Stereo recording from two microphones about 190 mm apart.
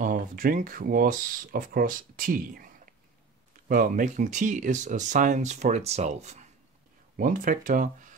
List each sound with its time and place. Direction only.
0.0 s speech: 45° right (ahead or behind)